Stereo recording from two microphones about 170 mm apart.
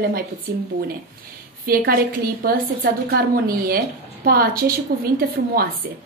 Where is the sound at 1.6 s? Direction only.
60° right (ahead or behind).